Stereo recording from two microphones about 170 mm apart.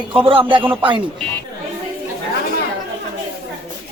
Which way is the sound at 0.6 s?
10° right (ahead or behind).